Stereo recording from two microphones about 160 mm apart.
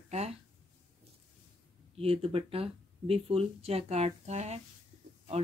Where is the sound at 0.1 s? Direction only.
40° right (ahead or behind).